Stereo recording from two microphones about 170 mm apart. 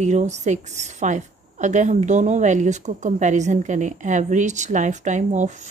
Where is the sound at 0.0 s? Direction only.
45° right (ahead or behind).